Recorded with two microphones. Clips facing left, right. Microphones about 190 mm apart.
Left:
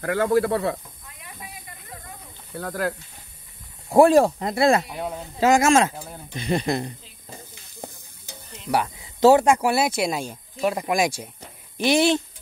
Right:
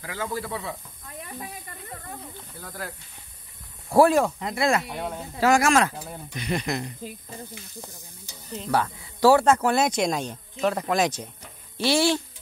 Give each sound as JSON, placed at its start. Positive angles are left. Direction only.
{"t": 0.0, "sound": "speech", "side_deg": 60}
{"t": 2.5, "sound": "speech", "side_deg": 70}
{"t": 3.9, "sound": "speech", "side_deg": 30}
{"t": 4.8, "sound": "speech", "side_deg": 0}
{"t": 5.4, "sound": "speech", "side_deg": 20}
{"t": 8.6, "sound": "speech", "side_deg": 15}